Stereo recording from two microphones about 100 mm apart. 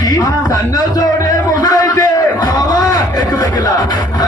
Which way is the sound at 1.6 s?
40° left (ahead or behind).